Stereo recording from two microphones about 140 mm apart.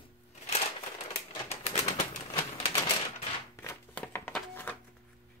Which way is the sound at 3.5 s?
15° left (ahead or behind).